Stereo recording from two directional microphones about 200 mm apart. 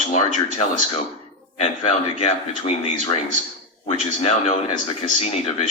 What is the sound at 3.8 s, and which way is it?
Speech, 35° left (ahead or behind).